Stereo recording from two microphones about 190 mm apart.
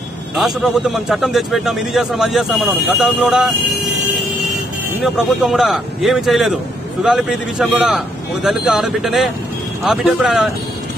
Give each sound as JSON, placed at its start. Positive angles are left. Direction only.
{"t": 0.4, "sound": "a man's voice", "side_deg": 0}
{"t": 5.0, "sound": "a man's voice", "side_deg": 0}